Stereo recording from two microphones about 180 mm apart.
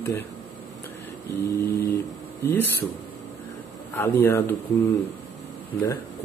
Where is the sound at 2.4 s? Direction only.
10° left (ahead or behind).